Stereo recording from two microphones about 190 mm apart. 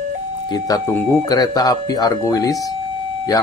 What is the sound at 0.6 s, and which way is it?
A man's voice, 20° left (ahead or behind).